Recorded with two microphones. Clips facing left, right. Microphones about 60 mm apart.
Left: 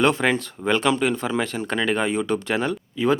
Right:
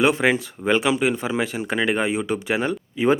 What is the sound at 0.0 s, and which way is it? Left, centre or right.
Speech, centre.